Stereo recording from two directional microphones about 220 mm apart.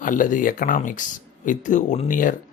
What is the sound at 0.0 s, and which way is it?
Speech, 35° left (ahead or behind).